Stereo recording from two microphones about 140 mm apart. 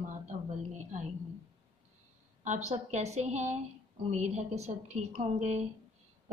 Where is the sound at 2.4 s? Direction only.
60° right (ahead or behind).